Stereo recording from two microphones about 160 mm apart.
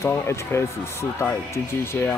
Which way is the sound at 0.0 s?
15° left (ahead or behind).